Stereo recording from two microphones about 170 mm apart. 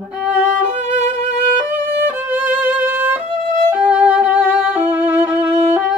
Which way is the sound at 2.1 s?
10° right (ahead or behind).